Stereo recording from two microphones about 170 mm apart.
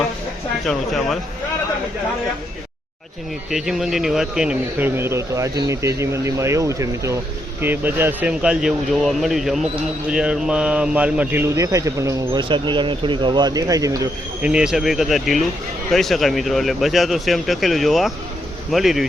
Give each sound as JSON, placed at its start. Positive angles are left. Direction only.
{"t": 0.6, "sound": "speech", "side_deg": 0}
{"t": 3.5, "sound": "a man's voice", "side_deg": 0}
{"t": 14.4, "sound": "speech", "side_deg": -5}